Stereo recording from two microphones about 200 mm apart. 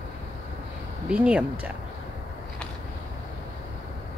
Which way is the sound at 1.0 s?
5° right (ahead or behind).